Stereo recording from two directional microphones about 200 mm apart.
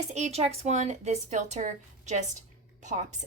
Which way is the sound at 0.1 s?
35° right (ahead or behind).